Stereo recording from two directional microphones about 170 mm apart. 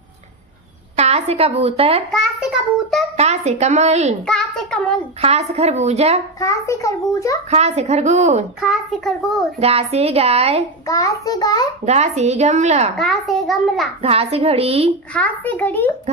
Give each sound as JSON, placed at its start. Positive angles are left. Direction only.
{"t": 0.9, "sound": "a woman's voice", "side_deg": -40}
{"t": 2.0, "sound": "child singing", "side_deg": -5}
{"t": 3.2, "sound": "a woman's voice", "side_deg": -40}
{"t": 4.3, "sound": "a child's voice", "side_deg": 5}
{"t": 5.2, "sound": "a woman's voice", "side_deg": -40}
{"t": 6.4, "sound": "a child's voice", "side_deg": 20}
{"t": 7.4, "sound": "a woman's voice", "side_deg": -40}
{"t": 8.5, "sound": "a child's voice", "side_deg": 0}
{"t": 9.6, "sound": "a woman's voice", "side_deg": -35}
{"t": 10.9, "sound": "a child's voice", "side_deg": 20}
{"t": 11.8, "sound": "a woman's voice", "side_deg": -40}
{"t": 12.9, "sound": "a child's voice", "side_deg": 0}
{"t": 14.0, "sound": "a woman's voice", "side_deg": -35}
{"t": 15.1, "sound": "a child's voice", "side_deg": 10}